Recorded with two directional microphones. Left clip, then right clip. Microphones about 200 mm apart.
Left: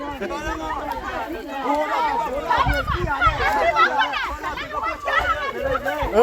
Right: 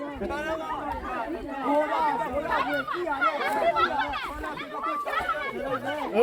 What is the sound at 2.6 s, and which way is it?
Speech, 25° left (ahead or behind).